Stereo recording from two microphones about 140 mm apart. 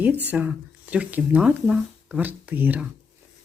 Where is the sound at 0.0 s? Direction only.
10° right (ahead or behind).